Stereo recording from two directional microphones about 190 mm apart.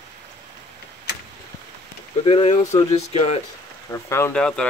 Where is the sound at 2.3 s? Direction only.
35° left (ahead or behind).